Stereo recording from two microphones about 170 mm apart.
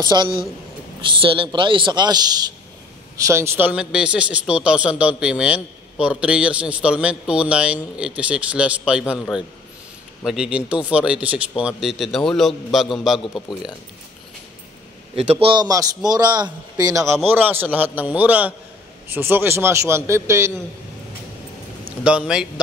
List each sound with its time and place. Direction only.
0.0 s a woman's voice: 25° right (ahead or behind); by 13.2 s centre (ahead or behind)
15.4 s a woman's voice: 25° right (ahead or behind)
22.0 s speech: 5° right (ahead or behind)